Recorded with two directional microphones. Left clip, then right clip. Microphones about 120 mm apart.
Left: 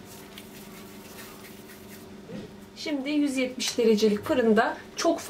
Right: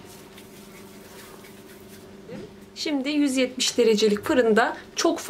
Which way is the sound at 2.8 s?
45° right (ahead or behind).